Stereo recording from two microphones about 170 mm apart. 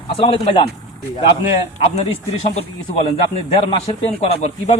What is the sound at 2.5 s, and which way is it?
A man's voice, 35° left (ahead or behind).